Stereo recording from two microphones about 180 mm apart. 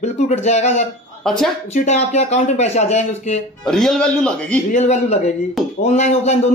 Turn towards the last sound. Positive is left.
turn(degrees=40)  # may be behind; listen again after turning